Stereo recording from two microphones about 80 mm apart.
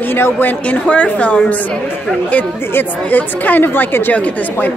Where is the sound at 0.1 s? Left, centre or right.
Left.